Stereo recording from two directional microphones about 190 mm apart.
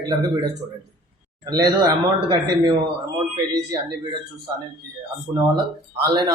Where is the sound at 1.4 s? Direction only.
20° right (ahead or behind).